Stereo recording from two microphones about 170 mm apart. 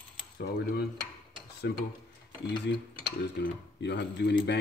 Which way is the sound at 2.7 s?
90° left.